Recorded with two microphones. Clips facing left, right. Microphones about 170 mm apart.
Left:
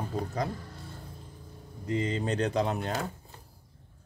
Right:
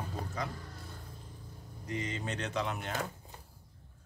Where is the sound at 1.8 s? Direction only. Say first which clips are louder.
Left 8 dB; 30° left (ahead or behind).